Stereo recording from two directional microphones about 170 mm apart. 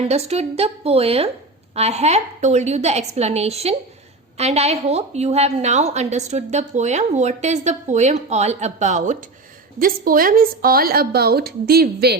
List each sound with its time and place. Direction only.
0.1 s a woman's voice: 40° right (ahead or behind)
9.7 s a woman's voice: 55° right (ahead or behind)